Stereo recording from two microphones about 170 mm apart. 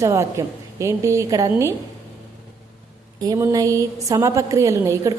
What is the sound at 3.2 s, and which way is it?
A woman's voice, 20° right (ahead or behind).